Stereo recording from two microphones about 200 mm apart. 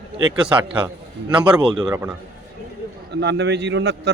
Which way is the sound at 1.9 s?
10° right (ahead or behind).